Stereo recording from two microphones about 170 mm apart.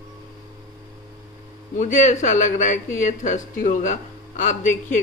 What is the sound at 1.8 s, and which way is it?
A man's voice, 50° left (ahead or behind).